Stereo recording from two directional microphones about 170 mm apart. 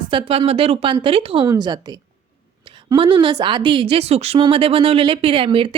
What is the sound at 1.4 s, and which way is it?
A woman's voice, 25° right (ahead or behind).